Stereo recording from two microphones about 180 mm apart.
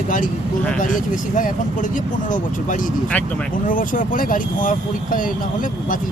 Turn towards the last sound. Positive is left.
turn(degrees=50)  # may be behind; listen again after turning